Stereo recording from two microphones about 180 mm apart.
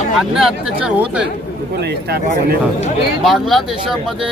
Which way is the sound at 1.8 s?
65° right (ahead or behind).